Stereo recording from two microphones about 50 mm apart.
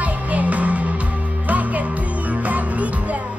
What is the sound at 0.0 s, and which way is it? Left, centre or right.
Music, right.